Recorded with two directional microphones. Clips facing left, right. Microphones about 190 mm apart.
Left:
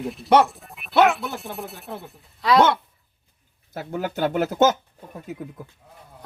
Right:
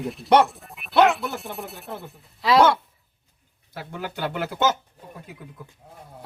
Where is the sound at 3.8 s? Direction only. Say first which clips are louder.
Left 6 dB; 45° left (ahead or behind).